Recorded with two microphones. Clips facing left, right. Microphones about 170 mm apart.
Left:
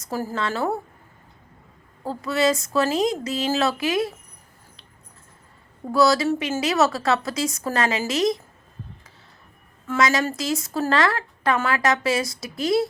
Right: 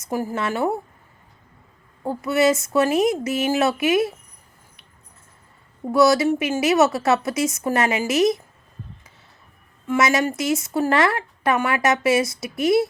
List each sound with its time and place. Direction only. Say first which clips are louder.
0.0 s speech: right 2 dB; 15° right (ahead or behind)
2.0 s speech: right 3 dB; 20° right (ahead or behind)
5.8 s speech: right 3 dB; 20° right (ahead or behind)
9.8 s speech: right 2 dB; 20° right (ahead or behind)